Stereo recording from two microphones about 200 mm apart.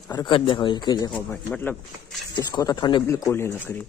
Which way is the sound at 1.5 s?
5° left (ahead or behind).